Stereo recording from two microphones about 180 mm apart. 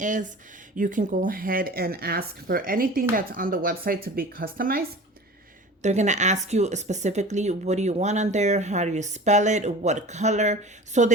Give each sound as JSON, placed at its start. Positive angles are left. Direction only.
{"t": 0.0, "sound": "speech", "side_deg": -45}
{"t": 5.8, "sound": "a woman's voice", "side_deg": -40}